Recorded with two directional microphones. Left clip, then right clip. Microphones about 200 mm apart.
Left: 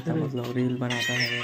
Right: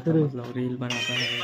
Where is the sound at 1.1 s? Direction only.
35° right (ahead or behind).